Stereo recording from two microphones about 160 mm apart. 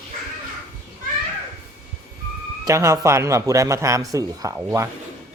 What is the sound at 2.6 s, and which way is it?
Speech, 20° right (ahead or behind).